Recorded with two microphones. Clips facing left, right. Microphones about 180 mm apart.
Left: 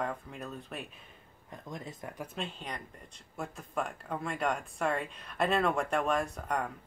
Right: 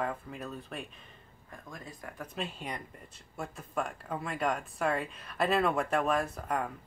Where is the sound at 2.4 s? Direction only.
10° right (ahead or behind).